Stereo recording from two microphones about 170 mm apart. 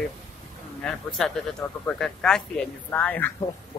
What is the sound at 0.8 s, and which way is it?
Speech, 5° left (ahead or behind).